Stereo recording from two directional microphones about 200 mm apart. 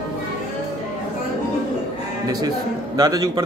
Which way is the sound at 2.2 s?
20° right (ahead or behind).